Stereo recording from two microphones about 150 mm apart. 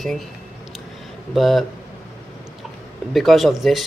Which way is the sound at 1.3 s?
Centre (ahead or behind).